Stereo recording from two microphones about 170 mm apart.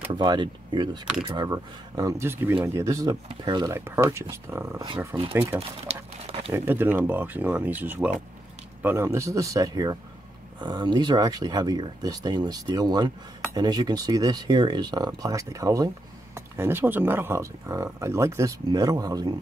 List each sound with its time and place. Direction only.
0.1 s speech: 25° right (ahead or behind)
4.8 s speech: 30° right (ahead or behind)
5.9 s speech: 40° right (ahead or behind)
6.5 s speech: 10° right (ahead or behind)